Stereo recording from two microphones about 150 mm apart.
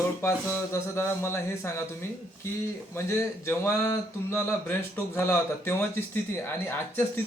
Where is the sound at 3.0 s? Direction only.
15° left (ahead or behind).